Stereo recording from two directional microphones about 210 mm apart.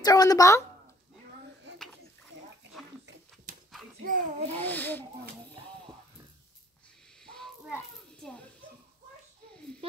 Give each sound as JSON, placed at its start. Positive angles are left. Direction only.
{"t": 0.0, "sound": "speech", "side_deg": 15}
{"t": 4.0, "sound": "a child's voice", "side_deg": -35}
{"t": 4.6, "sound": "speech", "side_deg": 10}
{"t": 7.2, "sound": "snake", "side_deg": 5}